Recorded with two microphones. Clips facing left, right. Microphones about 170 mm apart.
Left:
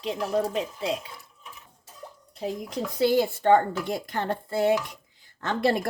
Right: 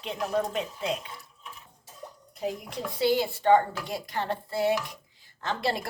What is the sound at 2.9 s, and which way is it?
A woman's voice, 50° left (ahead or behind).